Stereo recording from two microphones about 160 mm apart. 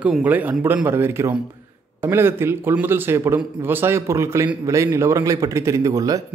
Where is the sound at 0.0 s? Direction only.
10° right (ahead or behind).